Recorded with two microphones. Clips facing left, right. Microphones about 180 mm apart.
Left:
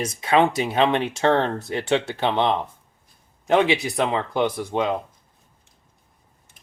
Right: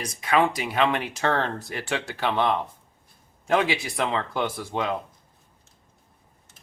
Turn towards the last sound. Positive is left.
turn(degrees=20)  # may be behind; listen again after turning